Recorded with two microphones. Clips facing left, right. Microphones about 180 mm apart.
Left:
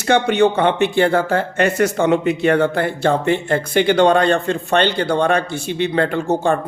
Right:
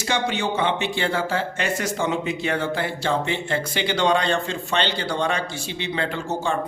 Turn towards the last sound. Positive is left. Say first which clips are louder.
# left 8 dB
turn(degrees=60)  # may be behind; listen again after turning